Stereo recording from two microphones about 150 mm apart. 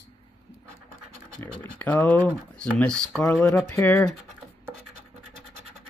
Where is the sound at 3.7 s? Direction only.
20° left (ahead or behind).